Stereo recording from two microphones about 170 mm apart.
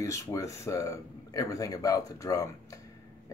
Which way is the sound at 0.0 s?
20° left (ahead or behind).